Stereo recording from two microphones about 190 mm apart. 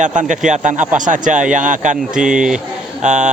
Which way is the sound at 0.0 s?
40° right (ahead or behind).